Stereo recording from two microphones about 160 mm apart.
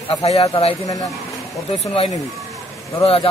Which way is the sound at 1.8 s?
35° left (ahead or behind).